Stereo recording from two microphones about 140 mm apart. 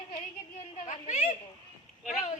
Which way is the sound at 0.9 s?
55° left (ahead or behind).